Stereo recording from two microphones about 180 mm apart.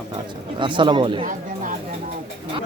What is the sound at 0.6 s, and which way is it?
Speech, 25° right (ahead or behind).